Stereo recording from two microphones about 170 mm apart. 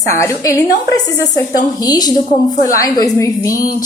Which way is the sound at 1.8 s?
20° left (ahead or behind).